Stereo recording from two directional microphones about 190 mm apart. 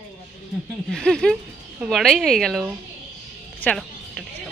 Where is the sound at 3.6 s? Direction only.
5° left (ahead or behind).